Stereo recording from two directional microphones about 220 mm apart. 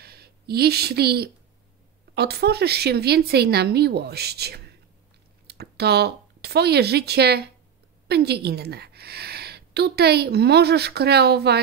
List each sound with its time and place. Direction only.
0.0 s a woman's voice: 45° right (ahead or behind)